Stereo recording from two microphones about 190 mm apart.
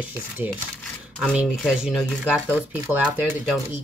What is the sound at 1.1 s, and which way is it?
Speech, centre (ahead or behind).